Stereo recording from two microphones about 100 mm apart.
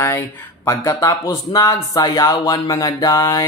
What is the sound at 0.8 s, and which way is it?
Speech, 35° left (ahead or behind).